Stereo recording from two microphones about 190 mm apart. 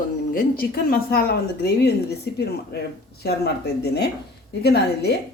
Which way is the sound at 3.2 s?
60° left (ahead or behind).